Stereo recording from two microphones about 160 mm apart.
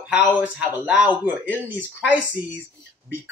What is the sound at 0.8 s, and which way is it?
Speech, 10° right (ahead or behind).